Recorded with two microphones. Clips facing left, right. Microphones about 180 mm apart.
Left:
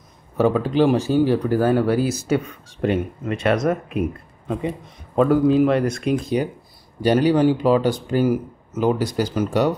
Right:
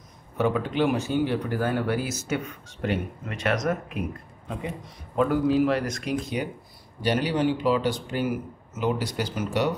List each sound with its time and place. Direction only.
0.4 s speech: 35° left (ahead or behind)
5.1 s speech: 25° left (ahead or behind)
7.0 s speech: 40° left (ahead or behind)